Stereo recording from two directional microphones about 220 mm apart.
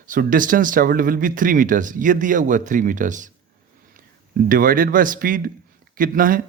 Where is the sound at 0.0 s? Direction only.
40° right (ahead or behind).